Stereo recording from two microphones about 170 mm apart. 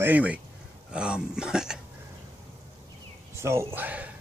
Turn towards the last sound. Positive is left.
turn(degrees=-10)  # may be behind; listen again after turning